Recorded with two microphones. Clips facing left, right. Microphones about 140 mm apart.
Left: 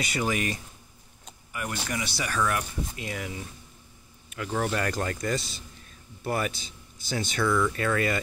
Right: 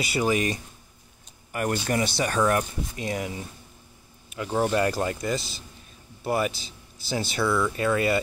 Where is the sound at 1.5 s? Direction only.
50° right (ahead or behind).